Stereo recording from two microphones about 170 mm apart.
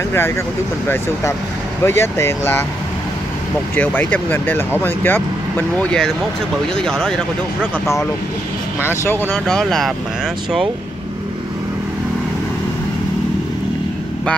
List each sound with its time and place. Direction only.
1.9 s speech: 15° left (ahead or behind)
3.7 s speech: 10° left (ahead or behind)
9.0 s speech: 10° left (ahead or behind)